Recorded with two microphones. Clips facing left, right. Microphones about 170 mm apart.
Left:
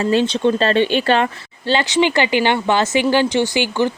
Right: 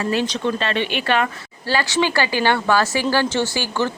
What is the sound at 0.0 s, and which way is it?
A woman's voice, 25° left (ahead or behind).